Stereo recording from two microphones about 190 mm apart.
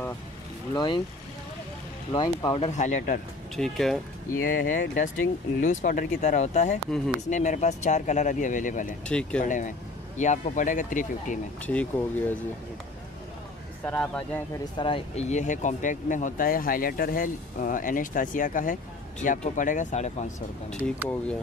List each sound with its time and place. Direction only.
0.7 s speech: 25° left (ahead or behind)
2.1 s speech: 25° left (ahead or behind)
2.8 s speech: 40° left (ahead or behind)
3.5 s speech: centre (ahead or behind)
4.5 s speech: 45° left (ahead or behind)
9.0 s speech: 5° left (ahead or behind)
9.4 s speech: 40° left (ahead or behind)
11.6 s speech: 5° left (ahead or behind)
13.8 s speech: 5° left (ahead or behind)
14.8 s speech: 30° left (ahead or behind)